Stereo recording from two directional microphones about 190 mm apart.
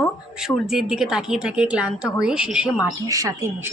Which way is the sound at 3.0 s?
20° right (ahead or behind).